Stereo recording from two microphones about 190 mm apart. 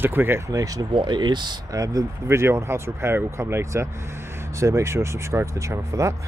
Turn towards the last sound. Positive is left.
turn(degrees=-15)  # may be behind; listen again after turning